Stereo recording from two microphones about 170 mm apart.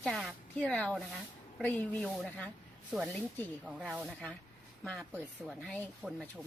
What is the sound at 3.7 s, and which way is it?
Speech, 5° right (ahead or behind).